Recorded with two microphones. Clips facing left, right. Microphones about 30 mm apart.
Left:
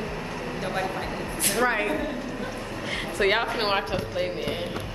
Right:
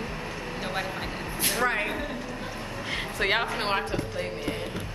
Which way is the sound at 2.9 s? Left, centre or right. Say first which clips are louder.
Left 3 dB; centre.